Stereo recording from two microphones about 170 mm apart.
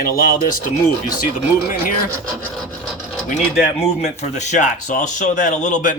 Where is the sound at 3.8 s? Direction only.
40° left (ahead or behind).